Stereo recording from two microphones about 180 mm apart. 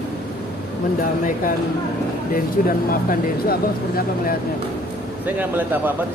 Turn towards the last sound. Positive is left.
turn(degrees=-10)  # may be behind; listen again after turning